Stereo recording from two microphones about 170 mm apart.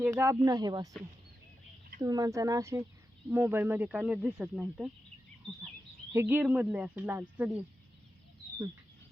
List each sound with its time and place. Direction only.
0.0 s speech: 15° right (ahead or behind)
2.0 s speech: 20° right (ahead or behind)
6.1 s speech: 10° right (ahead or behind)